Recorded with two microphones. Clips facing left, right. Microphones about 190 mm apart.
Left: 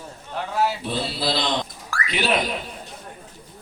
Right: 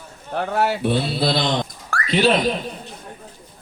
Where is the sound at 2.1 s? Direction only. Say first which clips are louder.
Right 6 dB; 35° right (ahead or behind).